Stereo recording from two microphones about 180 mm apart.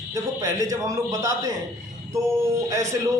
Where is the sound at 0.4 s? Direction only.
20° right (ahead or behind).